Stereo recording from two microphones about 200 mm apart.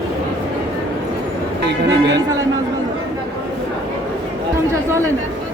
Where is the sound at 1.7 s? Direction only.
60° right (ahead or behind).